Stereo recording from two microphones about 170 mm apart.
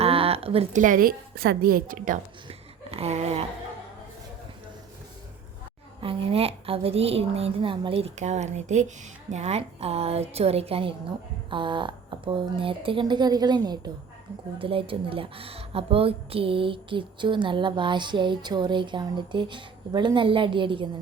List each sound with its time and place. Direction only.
0.0 s a woman's voice: 35° right (ahead or behind); by 2.1 s 55° right (ahead or behind)
2.5 s a sound: 35° right (ahead or behind)
6.0 s a woman's voice: 30° right (ahead or behind)